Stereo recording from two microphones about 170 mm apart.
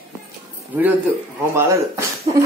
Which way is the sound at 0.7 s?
10° right (ahead or behind).